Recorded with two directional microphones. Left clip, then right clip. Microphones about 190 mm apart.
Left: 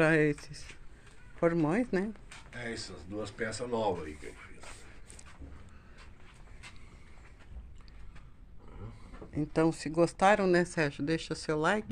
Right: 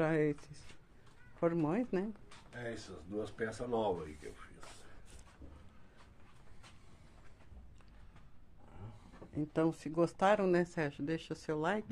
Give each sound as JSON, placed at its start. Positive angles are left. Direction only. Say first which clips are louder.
{"t": 0.0, "sound": "speech", "louder": "left 7 dB", "side_deg": 0}
{"t": 2.5, "sound": "speech", "louder": "left 4 dB", "side_deg": -50}
{"t": 9.3, "sound": "speech", "louder": "left 5 dB", "side_deg": -5}